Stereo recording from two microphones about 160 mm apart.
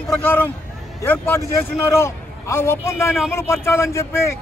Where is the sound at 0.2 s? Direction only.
10° left (ahead or behind).